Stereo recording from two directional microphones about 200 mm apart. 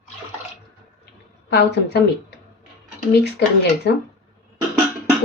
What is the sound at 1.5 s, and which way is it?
Speech, 55° left (ahead or behind).